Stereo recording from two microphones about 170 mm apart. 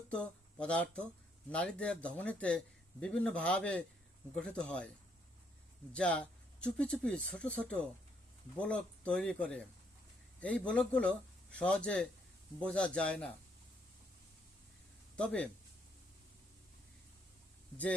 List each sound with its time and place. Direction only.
0.1 s a man's voice: 5° left (ahead or behind)
5.9 s a man's voice: 5° left (ahead or behind)
15.1 s speech: 5° left (ahead or behind)